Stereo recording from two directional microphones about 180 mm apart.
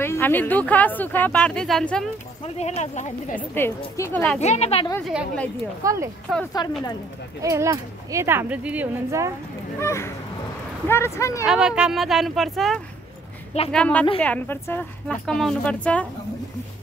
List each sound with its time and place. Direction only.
0.0 s speech: 10° left (ahead or behind)
2.4 s speech: 35° left (ahead or behind)
3.3 s speech: 10° left (ahead or behind)
4.4 s speech: 35° left (ahead or behind)
5.0 s speech: 5° left (ahead or behind)
5.8 s speech: 20° right (ahead or behind)
6.3 s speech: centre (ahead or behind)
7.4 s speech: 15° right (ahead or behind)
9.8 s speech: 15° left (ahead or behind)
11.4 s speech: 5° right (ahead or behind)